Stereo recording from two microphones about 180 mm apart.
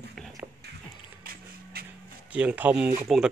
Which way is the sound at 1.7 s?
55° right (ahead or behind).